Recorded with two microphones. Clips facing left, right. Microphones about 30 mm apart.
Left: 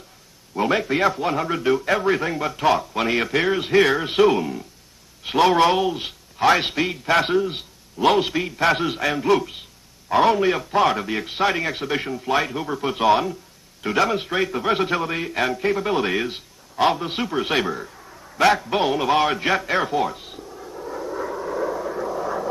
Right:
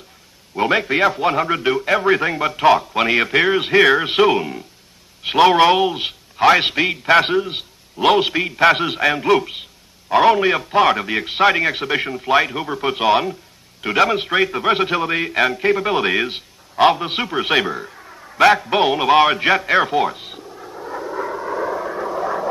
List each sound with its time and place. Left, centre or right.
0.6 s a man's voice: right
20.4 s vehicle: centre